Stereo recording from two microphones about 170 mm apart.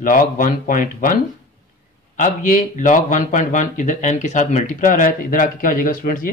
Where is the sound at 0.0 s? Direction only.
55° left (ahead or behind).